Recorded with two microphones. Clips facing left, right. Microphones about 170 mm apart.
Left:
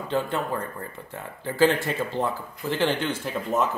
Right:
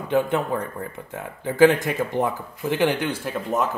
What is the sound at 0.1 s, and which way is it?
Speech, 15° right (ahead or behind).